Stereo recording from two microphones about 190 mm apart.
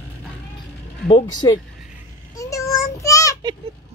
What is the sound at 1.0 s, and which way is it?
Child singing, 25° left (ahead or behind).